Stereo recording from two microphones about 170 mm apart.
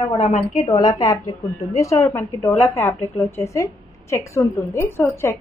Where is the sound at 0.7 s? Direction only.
20° left (ahead or behind).